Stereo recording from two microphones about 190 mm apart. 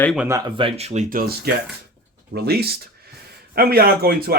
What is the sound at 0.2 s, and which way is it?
Speech, 15° right (ahead or behind).